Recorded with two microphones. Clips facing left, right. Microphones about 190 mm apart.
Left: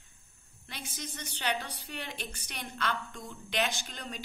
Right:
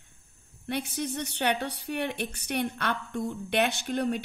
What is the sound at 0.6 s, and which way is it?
A woman's voice, 60° right (ahead or behind).